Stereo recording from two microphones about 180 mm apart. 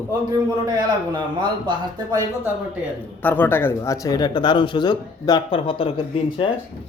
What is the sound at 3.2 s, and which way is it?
Speech, 10° left (ahead or behind).